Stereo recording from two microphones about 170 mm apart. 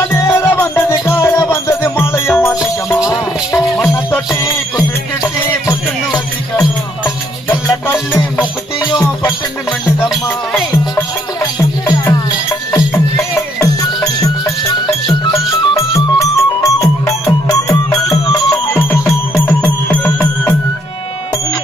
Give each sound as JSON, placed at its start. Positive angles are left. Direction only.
{"t": 0.1, "sound": "music", "side_deg": 10}
{"t": 10.0, "sound": "music", "side_deg": 15}
{"t": 11.8, "sound": "music", "side_deg": 20}
{"t": 15.7, "sound": "music", "side_deg": 20}